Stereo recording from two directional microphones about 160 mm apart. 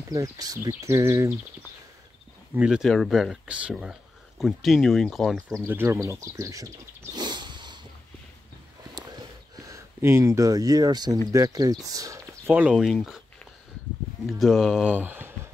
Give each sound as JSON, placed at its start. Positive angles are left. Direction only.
{"t": 0.1, "sound": "speech", "side_deg": -25}
{"t": 2.5, "sound": "speech", "side_deg": -5}
{"t": 5.5, "sound": "speech", "side_deg": -15}
{"t": 9.0, "sound": "a sound", "side_deg": -25}
{"t": 9.7, "sound": "speech", "side_deg": -20}
{"t": 14.2, "sound": "speech", "side_deg": 0}